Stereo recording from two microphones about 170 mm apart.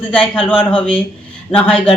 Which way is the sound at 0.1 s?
5° left (ahead or behind).